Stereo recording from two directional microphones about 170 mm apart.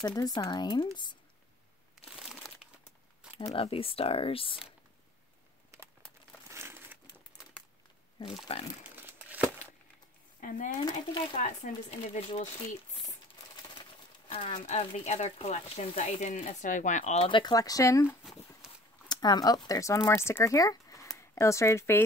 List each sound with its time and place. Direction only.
0.0 s speech: 25° left (ahead or behind)
3.5 s speech: 35° left (ahead or behind)
6.5 s crumpling: 15° right (ahead or behind)
8.5 s speech: 35° left (ahead or behind)
8.9 s crumpling: 10° right (ahead or behind)
10.4 s speech: 50° left (ahead or behind)
10.9 s speech: 25° left (ahead or behind)
11.3 s speech: 45° left (ahead or behind)
13.7 s speech: 30° left (ahead or behind)
18.6 s a sound: 5° right (ahead or behind)
19.0 s speech: 25° left (ahead or behind)